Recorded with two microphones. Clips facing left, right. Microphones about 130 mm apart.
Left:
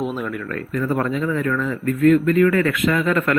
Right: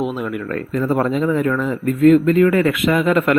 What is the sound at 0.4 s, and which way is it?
Speech, 30° right (ahead or behind).